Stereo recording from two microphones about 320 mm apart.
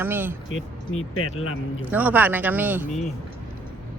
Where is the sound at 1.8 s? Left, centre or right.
Centre.